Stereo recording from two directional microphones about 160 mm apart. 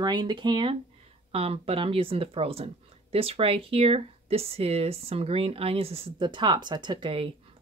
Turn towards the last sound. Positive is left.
turn(degrees=-35)  # may be behind; listen again after turning